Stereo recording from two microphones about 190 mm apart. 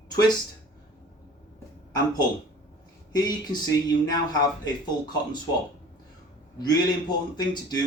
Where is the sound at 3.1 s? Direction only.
20° left (ahead or behind).